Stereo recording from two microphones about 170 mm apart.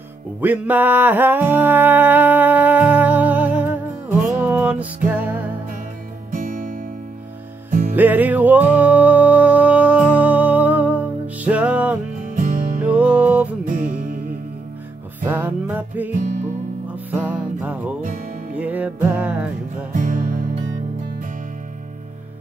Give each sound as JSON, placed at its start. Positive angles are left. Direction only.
{"t": 0.4, "sound": "music", "side_deg": -10}
{"t": 6.3, "sound": "music", "side_deg": -50}
{"t": 7.9, "sound": "music", "side_deg": -10}
{"t": 12.4, "sound": "music", "side_deg": -50}
{"t": 12.8, "sound": "music", "side_deg": -10}
{"t": 15.1, "sound": "music", "side_deg": -10}
{"t": 16.2, "sound": "music", "side_deg": -45}
{"t": 17.1, "sound": "music", "side_deg": -10}
{"t": 19.9, "sound": "music", "side_deg": -50}